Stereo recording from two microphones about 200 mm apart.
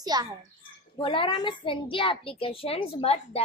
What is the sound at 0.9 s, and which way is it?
A child's voice, 25° left (ahead or behind).